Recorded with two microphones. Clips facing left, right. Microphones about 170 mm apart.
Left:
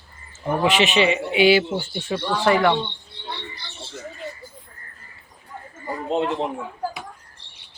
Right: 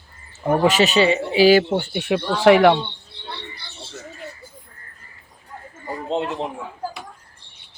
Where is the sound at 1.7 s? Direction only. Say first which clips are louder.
Right 5 dB; 65° right (ahead or behind).